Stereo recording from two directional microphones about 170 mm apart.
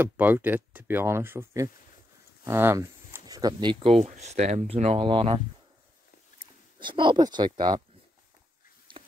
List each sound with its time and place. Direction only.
0.0 s speech: 10° right (ahead or behind)
4.0 s speech: 40° right (ahead or behind)
6.8 s speech: 30° right (ahead or behind)
8.9 s a sound: 30° right (ahead or behind)